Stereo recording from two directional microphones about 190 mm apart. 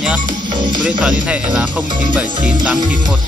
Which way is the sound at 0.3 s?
25° right (ahead or behind).